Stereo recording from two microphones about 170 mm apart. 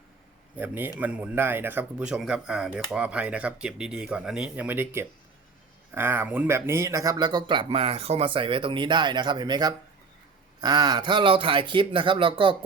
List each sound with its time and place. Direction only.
0.5 s speech: 10° right (ahead or behind); by 12.5 s 30° right (ahead or behind)